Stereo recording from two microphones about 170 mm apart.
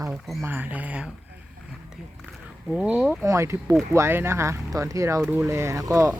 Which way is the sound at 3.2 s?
15° right (ahead or behind).